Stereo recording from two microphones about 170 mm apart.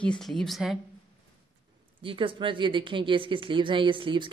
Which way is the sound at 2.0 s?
30° right (ahead or behind).